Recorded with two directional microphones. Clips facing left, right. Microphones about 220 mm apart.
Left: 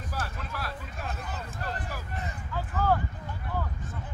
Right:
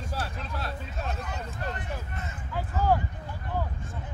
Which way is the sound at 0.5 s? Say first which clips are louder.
Right 2 dB; 25° right (ahead or behind).